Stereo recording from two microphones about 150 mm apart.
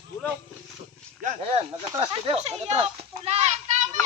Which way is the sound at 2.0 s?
40° right (ahead or behind).